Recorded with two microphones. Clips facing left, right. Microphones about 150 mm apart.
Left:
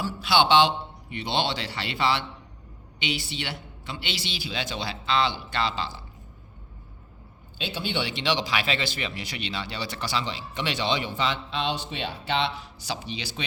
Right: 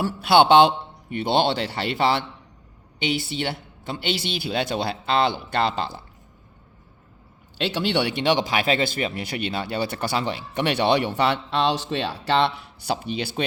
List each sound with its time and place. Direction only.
0.0 s speech: 55° right (ahead or behind)
7.6 s speech: 90° right; by 13.4 s 55° right (ahead or behind)